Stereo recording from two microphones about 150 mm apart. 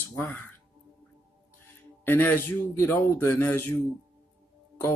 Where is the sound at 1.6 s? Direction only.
15° left (ahead or behind).